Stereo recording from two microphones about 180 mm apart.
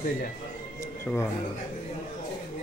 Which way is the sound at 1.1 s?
15° left (ahead or behind).